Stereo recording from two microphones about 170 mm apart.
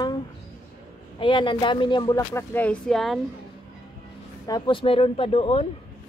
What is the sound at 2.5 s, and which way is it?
Speech, 10° left (ahead or behind).